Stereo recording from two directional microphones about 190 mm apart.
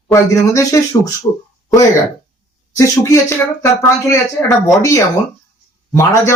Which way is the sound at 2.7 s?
15° left (ahead or behind).